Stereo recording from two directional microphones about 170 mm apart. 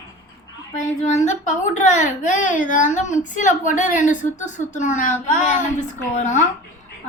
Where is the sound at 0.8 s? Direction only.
45° left (ahead or behind).